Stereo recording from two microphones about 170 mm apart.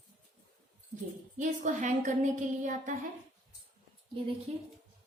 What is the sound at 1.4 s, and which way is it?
A woman's voice, 45° right (ahead or behind).